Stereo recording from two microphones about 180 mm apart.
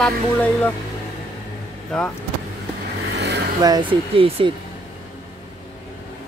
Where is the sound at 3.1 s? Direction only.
70° right (ahead or behind).